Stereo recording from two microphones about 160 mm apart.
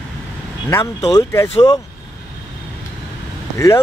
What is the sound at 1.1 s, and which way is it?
Speech, 15° left (ahead or behind).